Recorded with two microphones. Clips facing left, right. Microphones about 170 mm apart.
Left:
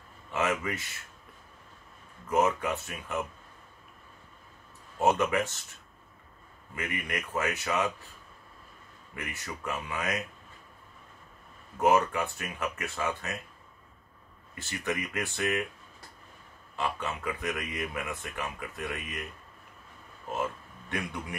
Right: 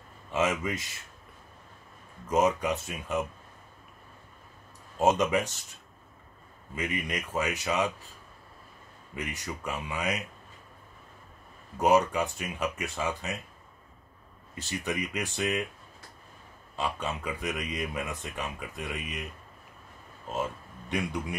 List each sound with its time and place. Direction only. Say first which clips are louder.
0.3 s speech: right 2 dB; 20° right (ahead or behind)
2.2 s speech: right 1 dB; 20° right (ahead or behind)
4.9 s speech: right 1 dB; 20° right (ahead or behind)
6.7 s speech: right 2 dB; 20° right (ahead or behind)
9.1 s speech: right 3 dB; 15° right (ahead or behind)
11.8 s speech: right 1 dB; 15° right (ahead or behind)
14.7 s speech: right 1 dB; 15° right (ahead or behind)
16.7 s speech: even; 15° right (ahead or behind)
20.9 s speech: right 4 dB; 15° right (ahead or behind)